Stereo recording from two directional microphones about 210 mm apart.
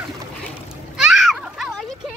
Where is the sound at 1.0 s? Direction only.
Centre (ahead or behind).